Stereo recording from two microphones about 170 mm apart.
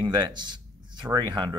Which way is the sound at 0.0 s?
25° right (ahead or behind).